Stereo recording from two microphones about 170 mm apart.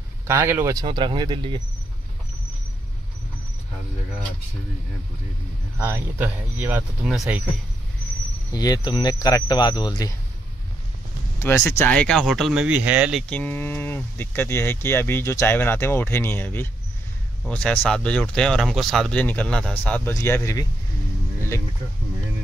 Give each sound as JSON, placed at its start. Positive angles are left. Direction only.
{"t": 0.3, "sound": "speech", "side_deg": -15}
{"t": 5.8, "sound": "speech", "side_deg": -15}
{"t": 8.5, "sound": "speech", "side_deg": 20}
{"t": 11.3, "sound": "speech", "side_deg": 15}
{"t": 13.3, "sound": "speech", "side_deg": 10}